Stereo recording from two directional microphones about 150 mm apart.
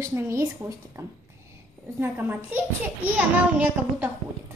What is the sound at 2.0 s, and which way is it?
A child's voice, 15° right (ahead or behind).